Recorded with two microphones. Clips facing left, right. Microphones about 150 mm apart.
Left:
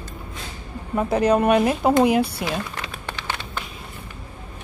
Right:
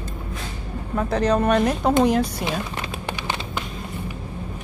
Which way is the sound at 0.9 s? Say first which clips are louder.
Left 2 dB; 10° left (ahead or behind).